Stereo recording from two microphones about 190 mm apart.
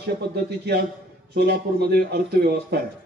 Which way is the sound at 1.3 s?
55° right (ahead or behind).